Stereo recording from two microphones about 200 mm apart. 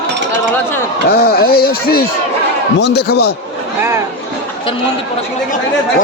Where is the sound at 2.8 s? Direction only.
55° left (ahead or behind).